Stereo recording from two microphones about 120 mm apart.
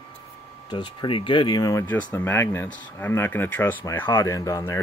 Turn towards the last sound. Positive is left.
turn(degrees=25)  # may be behind; listen again after turning